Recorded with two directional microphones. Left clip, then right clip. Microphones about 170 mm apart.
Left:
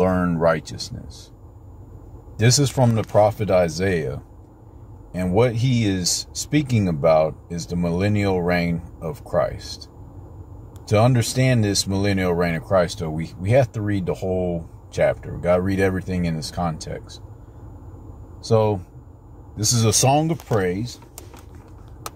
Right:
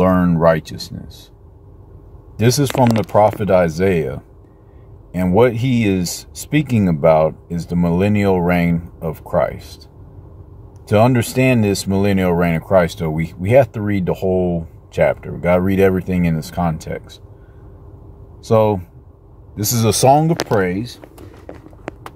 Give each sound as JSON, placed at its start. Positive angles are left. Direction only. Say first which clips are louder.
{"t": 0.0, "sound": "a sound", "louder": "right 5 dB", "side_deg": -20}
{"t": 2.3, "sound": "speech", "louder": "right 4 dB", "side_deg": -15}
{"t": 10.9, "sound": "speech", "louder": "right 5 dB", "side_deg": -15}
{"t": 19.6, "sound": "speech", "louder": "right 5 dB", "side_deg": -20}